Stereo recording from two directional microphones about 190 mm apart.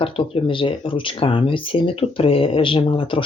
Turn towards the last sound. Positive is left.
turn(degrees=30)  # may be behind; listen again after turning